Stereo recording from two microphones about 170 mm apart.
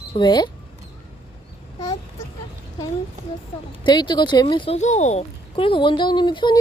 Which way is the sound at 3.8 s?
25° left (ahead or behind).